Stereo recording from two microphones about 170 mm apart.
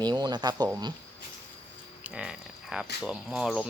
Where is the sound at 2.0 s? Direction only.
5° right (ahead or behind).